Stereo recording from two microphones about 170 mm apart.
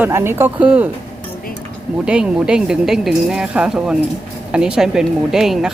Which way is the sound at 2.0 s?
5° right (ahead or behind).